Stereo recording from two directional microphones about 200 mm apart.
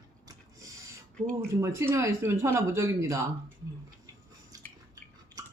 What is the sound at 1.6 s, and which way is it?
Speech, 15° right (ahead or behind).